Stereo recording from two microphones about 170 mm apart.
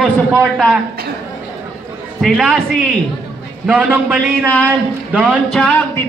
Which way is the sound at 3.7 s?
10° right (ahead or behind).